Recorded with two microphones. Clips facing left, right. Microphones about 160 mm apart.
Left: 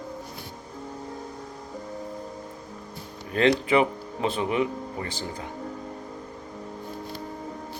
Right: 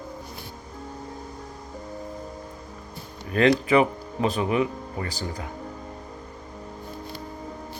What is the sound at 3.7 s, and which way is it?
Speech, 30° left (ahead or behind).